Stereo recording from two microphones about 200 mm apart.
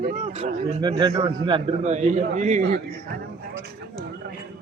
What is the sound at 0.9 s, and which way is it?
A man's voice, 20° right (ahead or behind).